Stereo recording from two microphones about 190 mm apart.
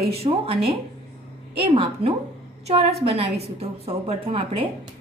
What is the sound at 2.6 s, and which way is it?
A woman's voice, 30° right (ahead or behind).